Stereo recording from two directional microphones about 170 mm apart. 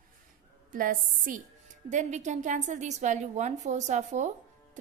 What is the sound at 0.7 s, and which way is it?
A woman's voice, 55° right (ahead or behind).